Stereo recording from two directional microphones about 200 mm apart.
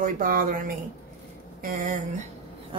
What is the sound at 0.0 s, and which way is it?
Speech, 45° right (ahead or behind).